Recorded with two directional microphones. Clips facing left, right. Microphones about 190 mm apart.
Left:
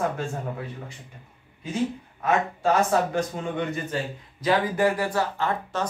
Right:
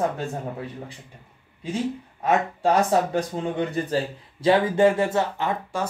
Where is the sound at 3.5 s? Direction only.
35° right (ahead or behind); by 5.9 s 15° right (ahead or behind).